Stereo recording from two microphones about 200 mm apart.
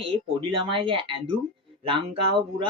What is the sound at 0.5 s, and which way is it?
A woman's voice, 25° right (ahead or behind).